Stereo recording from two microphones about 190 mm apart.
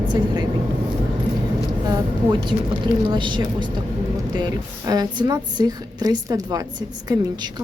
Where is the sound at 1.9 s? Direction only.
25° right (ahead or behind).